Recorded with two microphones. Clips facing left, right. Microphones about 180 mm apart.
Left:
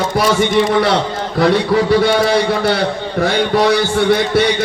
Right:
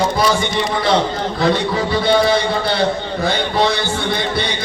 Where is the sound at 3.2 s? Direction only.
80° left.